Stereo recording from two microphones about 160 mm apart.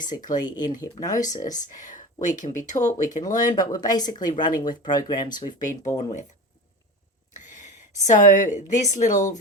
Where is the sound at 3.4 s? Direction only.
25° left (ahead or behind).